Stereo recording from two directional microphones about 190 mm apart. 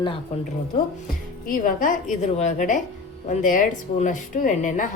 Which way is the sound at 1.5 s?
45° left (ahead or behind).